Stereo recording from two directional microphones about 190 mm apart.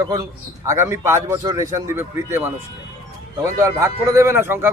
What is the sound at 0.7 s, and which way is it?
A man's voice, 15° right (ahead or behind).